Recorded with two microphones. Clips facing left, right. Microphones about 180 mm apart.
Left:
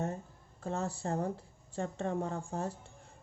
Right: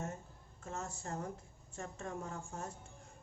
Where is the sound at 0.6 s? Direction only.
35° left (ahead or behind).